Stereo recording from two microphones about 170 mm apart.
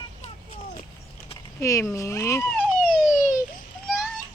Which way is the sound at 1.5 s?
20° left (ahead or behind).